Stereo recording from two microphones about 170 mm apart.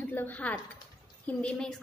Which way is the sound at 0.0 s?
10° left (ahead or behind).